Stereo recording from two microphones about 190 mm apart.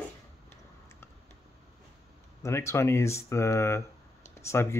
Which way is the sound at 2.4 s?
15° left (ahead or behind).